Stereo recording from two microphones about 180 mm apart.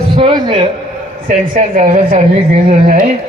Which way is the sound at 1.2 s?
40° right (ahead or behind).